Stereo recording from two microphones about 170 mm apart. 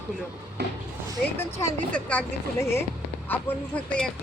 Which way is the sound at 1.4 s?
15° left (ahead or behind).